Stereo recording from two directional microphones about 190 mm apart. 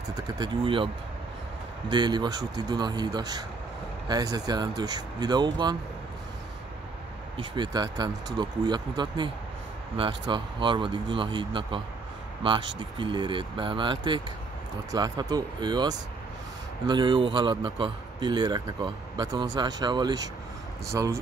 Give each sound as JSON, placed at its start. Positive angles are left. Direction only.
{"t": 0.1, "sound": "speech", "side_deg": -25}
{"t": 1.9, "sound": "a man's voice", "side_deg": -25}
{"t": 7.3, "sound": "a man's voice", "side_deg": -25}
{"t": 12.9, "sound": "a man's voice", "side_deg": -25}